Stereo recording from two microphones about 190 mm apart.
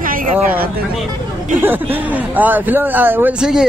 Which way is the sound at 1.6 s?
10° right (ahead or behind).